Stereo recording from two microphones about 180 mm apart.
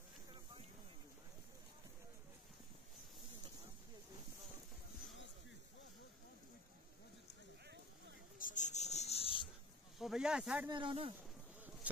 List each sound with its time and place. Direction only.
8.4 s a sound: 45° left (ahead or behind)
9.9 s speech: 5° right (ahead or behind)
10.7 s speech: 30° right (ahead or behind)